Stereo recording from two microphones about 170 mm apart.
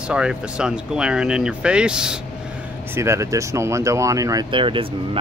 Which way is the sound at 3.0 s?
15° right (ahead or behind).